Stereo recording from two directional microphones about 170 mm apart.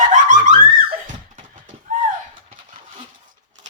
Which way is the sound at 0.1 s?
50° right (ahead or behind).